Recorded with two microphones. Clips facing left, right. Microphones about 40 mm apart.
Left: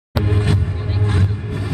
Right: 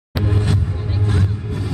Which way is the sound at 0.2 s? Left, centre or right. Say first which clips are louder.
Left 1 dB; centre.